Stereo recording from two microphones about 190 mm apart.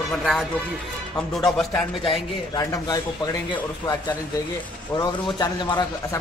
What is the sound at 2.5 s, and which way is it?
Speech, 20° left (ahead or behind).